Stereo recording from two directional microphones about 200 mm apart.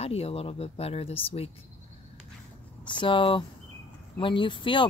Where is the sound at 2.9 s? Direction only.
25° left (ahead or behind).